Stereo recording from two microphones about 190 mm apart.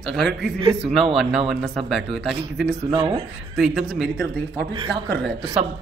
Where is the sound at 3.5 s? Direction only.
5° right (ahead or behind).